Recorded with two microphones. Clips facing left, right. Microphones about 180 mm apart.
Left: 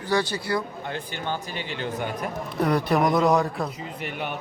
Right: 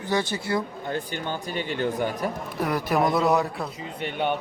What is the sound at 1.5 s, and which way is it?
Speech, 45° right (ahead or behind).